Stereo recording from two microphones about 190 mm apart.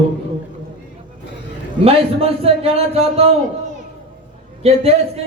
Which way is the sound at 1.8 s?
30° right (ahead or behind).